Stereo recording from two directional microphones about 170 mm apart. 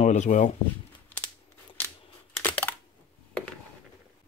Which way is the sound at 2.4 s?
10° left (ahead or behind).